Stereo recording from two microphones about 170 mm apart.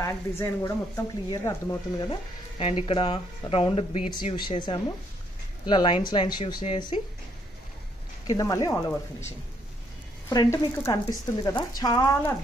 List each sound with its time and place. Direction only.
0.4 s speech: 20° left (ahead or behind)
2.6 s speech: 35° left (ahead or behind)
8.3 s speech: 20° left (ahead or behind)
10.3 s speech: 25° left (ahead or behind)